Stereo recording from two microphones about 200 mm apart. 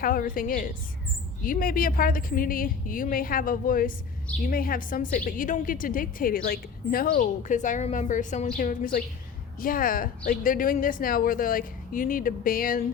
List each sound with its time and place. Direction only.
0.0 s a woman's voice: 45° left (ahead or behind)